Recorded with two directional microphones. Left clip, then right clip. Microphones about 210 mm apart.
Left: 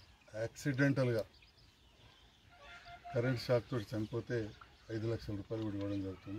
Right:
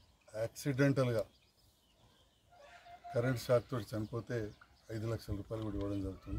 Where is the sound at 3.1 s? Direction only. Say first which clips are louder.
Right 2 dB; 15° right (ahead or behind).